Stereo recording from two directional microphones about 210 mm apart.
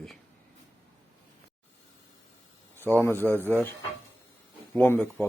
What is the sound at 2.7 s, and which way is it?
Speech, 10° left (ahead or behind).